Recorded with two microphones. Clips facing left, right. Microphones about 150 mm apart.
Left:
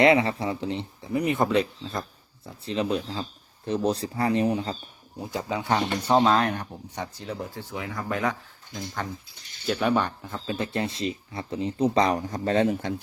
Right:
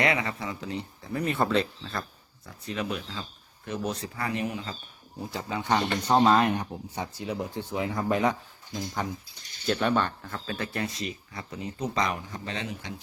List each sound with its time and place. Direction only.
0.0 s speech: 25° left (ahead or behind)
5.2 s speech: 20° left (ahead or behind)
5.6 s speech: 5° left (ahead or behind); by 9.2 s 15° right (ahead or behind)
9.6 s speech: 5° left (ahead or behind); by 13.0 s 50° left (ahead or behind)